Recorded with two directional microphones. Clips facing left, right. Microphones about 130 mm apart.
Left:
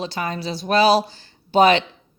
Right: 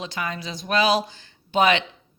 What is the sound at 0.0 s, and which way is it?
A woman's voice, 35° left (ahead or behind).